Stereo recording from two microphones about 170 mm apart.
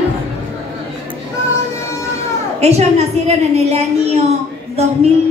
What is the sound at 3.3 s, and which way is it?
A woman's voice, 40° right (ahead or behind).